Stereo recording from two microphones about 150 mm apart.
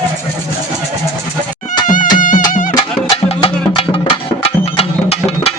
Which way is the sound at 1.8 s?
60° left (ahead or behind).